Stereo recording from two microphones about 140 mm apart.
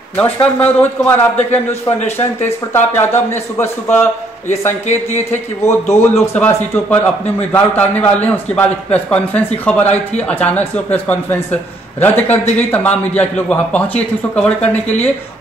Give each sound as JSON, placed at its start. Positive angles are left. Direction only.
{"t": 0.1, "sound": "speech", "side_deg": 10}
{"t": 5.3, "sound": "speech", "side_deg": 20}